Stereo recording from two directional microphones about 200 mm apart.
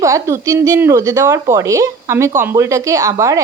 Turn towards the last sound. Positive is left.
turn(degrees=-15)  # may be behind; listen again after turning